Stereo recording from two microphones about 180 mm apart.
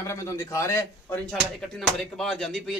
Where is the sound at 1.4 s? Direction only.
Centre (ahead or behind).